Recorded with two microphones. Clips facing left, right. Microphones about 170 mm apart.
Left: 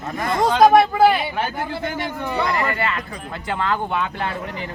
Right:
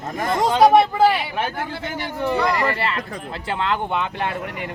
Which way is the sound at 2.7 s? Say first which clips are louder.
Even; 30° right (ahead or behind).